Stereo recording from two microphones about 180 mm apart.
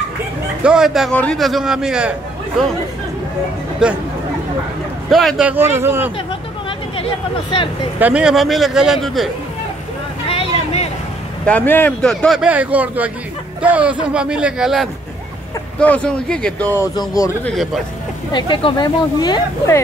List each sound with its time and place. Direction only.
0.7 s speech: 5° right (ahead or behind)
3.8 s speech: 5° right (ahead or behind)
5.1 s a man's voice: 5° right (ahead or behind)
7.0 s speech: 30° left (ahead or behind)
8.0 s speech: 5° right (ahead or behind)
10.2 s vehicle: 30° left (ahead or behind)
11.4 s speech: 10° left (ahead or behind)
18.3 s speech: 25° left (ahead or behind)